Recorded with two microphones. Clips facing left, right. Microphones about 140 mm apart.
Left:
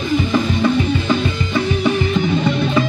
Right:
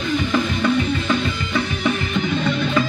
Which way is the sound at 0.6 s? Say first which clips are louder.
Left 3 dB; 25° left (ahead or behind).